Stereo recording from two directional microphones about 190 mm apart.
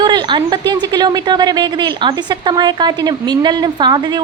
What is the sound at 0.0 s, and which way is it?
A woman's voice, 25° right (ahead or behind).